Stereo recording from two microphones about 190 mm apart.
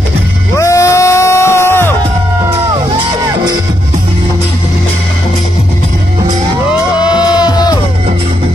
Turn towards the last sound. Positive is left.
turn(degrees=20)  # may be behind; listen again after turning